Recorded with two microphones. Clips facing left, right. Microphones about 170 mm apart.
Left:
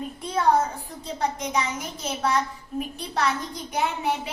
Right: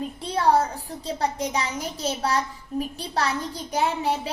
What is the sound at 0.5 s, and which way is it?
A child's voice, 30° right (ahead or behind).